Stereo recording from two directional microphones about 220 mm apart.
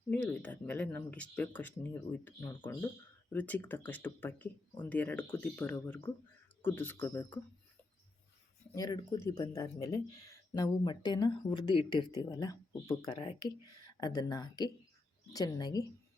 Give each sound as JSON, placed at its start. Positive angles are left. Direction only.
{"t": 0.1, "sound": "speech", "side_deg": 5}
{"t": 8.7, "sound": "speech", "side_deg": 15}